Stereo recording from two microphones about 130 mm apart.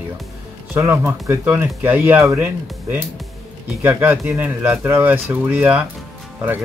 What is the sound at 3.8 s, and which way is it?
Speech, 15° right (ahead or behind).